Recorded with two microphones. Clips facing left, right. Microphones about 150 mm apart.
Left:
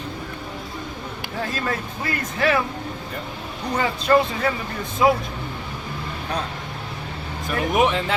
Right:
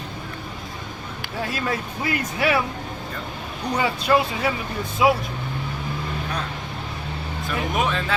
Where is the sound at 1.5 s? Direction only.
10° right (ahead or behind).